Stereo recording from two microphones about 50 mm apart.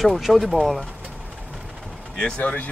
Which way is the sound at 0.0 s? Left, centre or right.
Centre.